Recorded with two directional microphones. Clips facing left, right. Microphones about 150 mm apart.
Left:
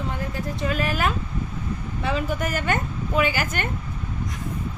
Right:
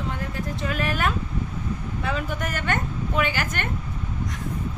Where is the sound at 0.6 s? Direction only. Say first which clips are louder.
Left 2 dB; centre (ahead or behind).